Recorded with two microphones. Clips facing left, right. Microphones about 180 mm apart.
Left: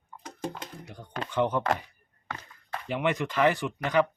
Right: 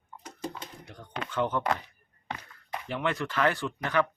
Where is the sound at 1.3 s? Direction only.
15° left (ahead or behind).